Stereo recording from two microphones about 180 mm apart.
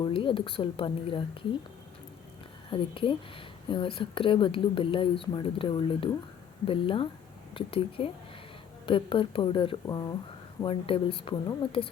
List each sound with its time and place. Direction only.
0.0 s speech: 30° left (ahead or behind)
2.6 s speech: 30° left (ahead or behind)